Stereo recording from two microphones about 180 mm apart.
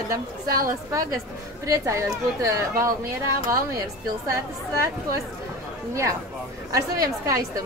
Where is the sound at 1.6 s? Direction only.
15° right (ahead or behind).